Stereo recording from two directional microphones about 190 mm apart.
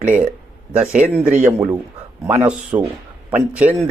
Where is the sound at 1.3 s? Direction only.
45° right (ahead or behind).